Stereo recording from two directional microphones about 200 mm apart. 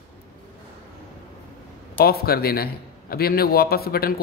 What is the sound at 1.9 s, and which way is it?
Speech, 50° left (ahead or behind).